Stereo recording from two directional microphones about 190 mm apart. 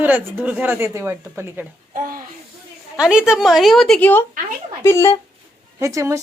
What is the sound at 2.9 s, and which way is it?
A woman's voice, 5° right (ahead or behind).